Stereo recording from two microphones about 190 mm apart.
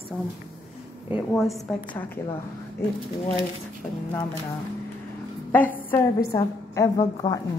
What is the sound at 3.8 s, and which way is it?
Speech, 15° left (ahead or behind).